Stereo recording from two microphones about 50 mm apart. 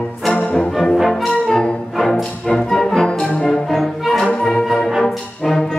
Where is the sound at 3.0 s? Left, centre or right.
Centre.